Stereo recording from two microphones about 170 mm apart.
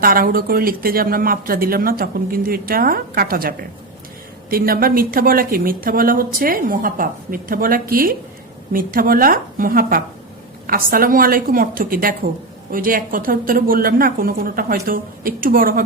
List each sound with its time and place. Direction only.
0.0 s speech: 60° right (ahead or behind)